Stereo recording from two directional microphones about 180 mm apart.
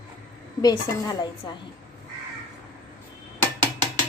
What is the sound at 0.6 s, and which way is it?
Speech, 20° left (ahead or behind).